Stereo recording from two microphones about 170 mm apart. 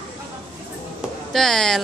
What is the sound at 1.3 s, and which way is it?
Speech, centre (ahead or behind).